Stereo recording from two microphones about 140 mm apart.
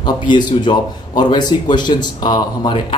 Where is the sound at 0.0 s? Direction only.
35° left (ahead or behind).